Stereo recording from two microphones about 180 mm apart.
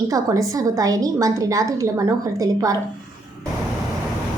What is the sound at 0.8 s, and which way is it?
A woman's voice, 20° right (ahead or behind).